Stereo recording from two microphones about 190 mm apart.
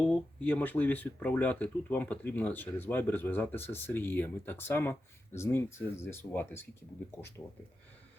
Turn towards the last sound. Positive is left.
turn(degrees=15)  # may be behind; listen again after turning